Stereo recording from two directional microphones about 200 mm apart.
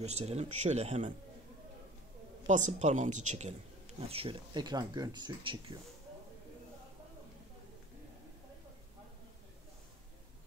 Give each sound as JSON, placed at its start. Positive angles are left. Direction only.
{"t": 0.0, "sound": "speech", "side_deg": -30}
{"t": 2.4, "sound": "speech", "side_deg": -35}